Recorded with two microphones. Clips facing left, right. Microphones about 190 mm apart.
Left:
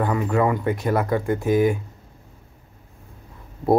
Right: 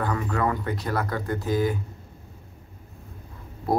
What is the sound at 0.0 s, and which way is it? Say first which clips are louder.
Speech: left 5 dB; 15° left (ahead or behind).